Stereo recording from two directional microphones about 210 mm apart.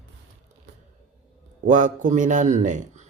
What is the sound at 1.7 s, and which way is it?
A man's voice, 35° right (ahead or behind).